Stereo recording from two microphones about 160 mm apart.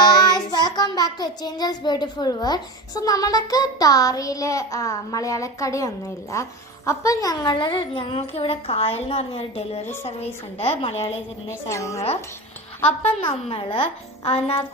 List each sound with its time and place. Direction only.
0.0 s child singing: 25° left (ahead or behind)
6.3 s a woman's voice: 20° left (ahead or behind); by 9.8 s 40° left (ahead or behind)
9.8 s a woman's voice: 15° left (ahead or behind)
10.1 s a woman's voice: 40° left (ahead or behind)
11.7 s child singing: 20° left (ahead or behind)
13.1 s a woman's voice: 35° left (ahead or behind)